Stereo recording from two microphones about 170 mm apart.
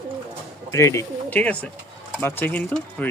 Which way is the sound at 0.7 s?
15° left (ahead or behind).